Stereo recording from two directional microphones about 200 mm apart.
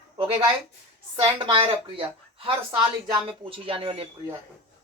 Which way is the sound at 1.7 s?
25° right (ahead or behind).